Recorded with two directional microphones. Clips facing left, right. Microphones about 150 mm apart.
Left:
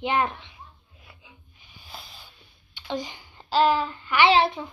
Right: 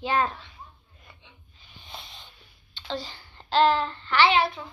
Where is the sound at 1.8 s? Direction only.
5° left (ahead or behind).